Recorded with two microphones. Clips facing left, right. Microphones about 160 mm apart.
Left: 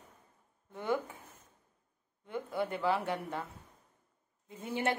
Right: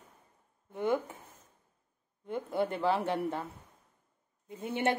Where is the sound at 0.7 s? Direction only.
20° right (ahead or behind).